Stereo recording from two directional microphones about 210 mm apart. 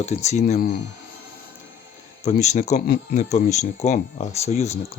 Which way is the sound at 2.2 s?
35° left (ahead or behind).